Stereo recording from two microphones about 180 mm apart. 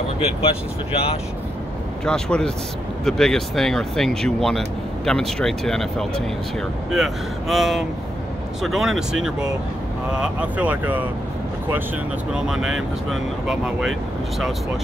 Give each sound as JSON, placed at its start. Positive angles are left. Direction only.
{"t": 0.2, "sound": "speech", "side_deg": 35}
{"t": 2.0, "sound": "speech", "side_deg": 5}
{"t": 12.4, "sound": "speech", "side_deg": -5}